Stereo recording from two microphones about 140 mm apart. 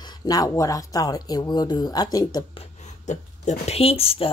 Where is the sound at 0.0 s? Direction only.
30° left (ahead or behind).